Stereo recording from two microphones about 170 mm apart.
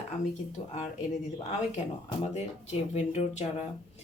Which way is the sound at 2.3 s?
40° left (ahead or behind).